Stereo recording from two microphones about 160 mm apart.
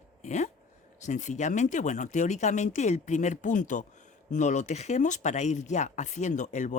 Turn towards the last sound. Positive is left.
turn(degrees=50)  # may be behind; listen again after turning